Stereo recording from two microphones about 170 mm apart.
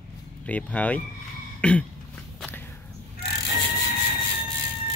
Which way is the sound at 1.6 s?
5° left (ahead or behind).